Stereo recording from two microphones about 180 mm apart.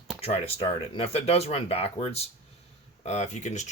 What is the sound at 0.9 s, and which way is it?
Speech, 35° left (ahead or behind).